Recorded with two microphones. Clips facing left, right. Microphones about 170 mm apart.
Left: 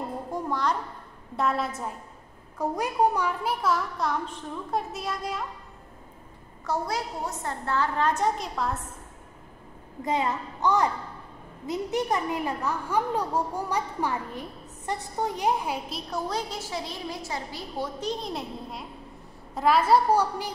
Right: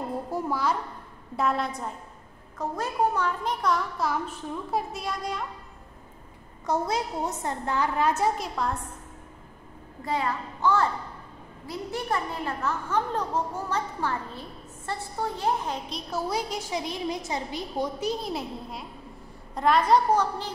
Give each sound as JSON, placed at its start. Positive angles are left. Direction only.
{"t": 0.3, "sound": "a sound", "side_deg": -5}
{"t": 1.3, "sound": "a woman's voice", "side_deg": 0}
{"t": 6.6, "sound": "a woman's voice", "side_deg": -20}
{"t": 10.0, "sound": "a child's voice", "side_deg": 20}
{"t": 16.1, "sound": "a woman's voice", "side_deg": -5}
{"t": 18.2, "sound": "a woman's voice", "side_deg": 0}